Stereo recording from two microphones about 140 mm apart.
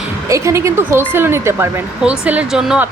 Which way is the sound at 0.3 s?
20° right (ahead or behind).